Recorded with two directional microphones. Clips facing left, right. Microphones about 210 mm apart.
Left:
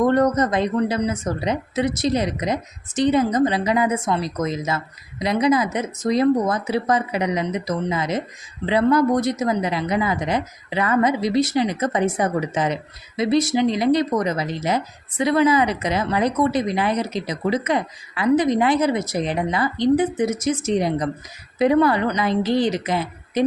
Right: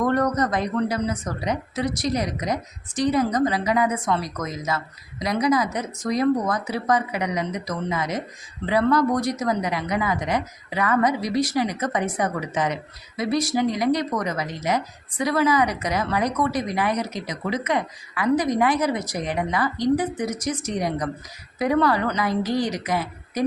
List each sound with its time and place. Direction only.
0.0 s speech: 25° left (ahead or behind)